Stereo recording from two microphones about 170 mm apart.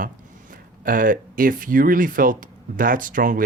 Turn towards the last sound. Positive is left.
turn(degrees=-50)  # may be behind; listen again after turning